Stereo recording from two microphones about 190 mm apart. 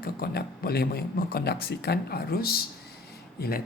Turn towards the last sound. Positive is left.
turn(degrees=55)  # may be behind; listen again after turning